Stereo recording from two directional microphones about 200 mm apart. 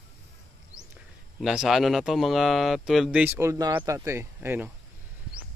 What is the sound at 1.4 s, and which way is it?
Speech, centre (ahead or behind).